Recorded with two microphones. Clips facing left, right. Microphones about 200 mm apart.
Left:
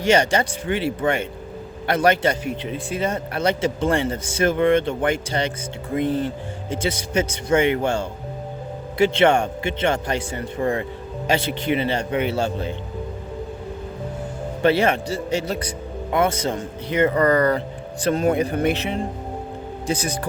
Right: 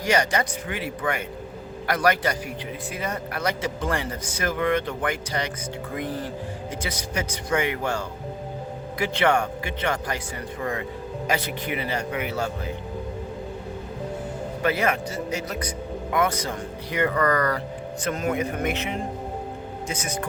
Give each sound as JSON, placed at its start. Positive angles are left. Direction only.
{"t": 0.0, "sound": "a man's voice", "side_deg": 25}
{"t": 14.6, "sound": "a man's voice", "side_deg": 30}